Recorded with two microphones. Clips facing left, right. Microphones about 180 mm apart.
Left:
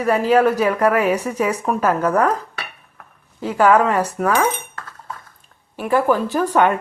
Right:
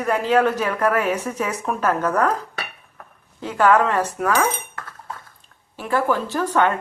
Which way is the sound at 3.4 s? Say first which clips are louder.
Left 2 dB; 10° left (ahead or behind).